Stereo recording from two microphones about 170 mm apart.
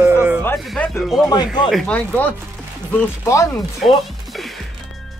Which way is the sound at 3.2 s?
20° left (ahead or behind).